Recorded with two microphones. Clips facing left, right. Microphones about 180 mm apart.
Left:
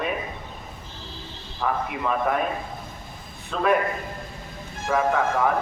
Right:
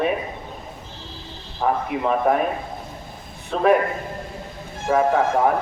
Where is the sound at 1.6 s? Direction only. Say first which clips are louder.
Right 4 dB; 35° right (ahead or behind).